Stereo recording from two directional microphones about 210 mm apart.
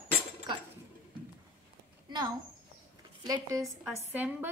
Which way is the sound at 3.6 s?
5° right (ahead or behind).